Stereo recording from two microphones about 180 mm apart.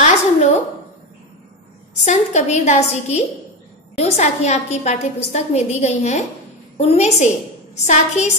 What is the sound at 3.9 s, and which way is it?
A woman's voice, 40° left (ahead or behind).